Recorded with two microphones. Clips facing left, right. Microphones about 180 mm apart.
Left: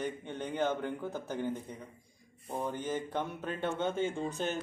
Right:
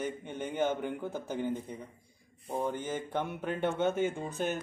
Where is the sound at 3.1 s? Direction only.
20° right (ahead or behind).